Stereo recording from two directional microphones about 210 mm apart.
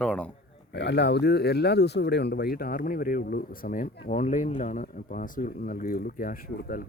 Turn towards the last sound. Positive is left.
turn(degrees=40)  # may be behind; listen again after turning